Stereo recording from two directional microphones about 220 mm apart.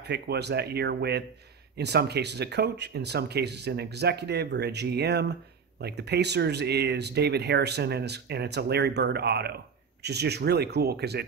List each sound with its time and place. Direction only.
0.0 s speech: 50° right (ahead or behind)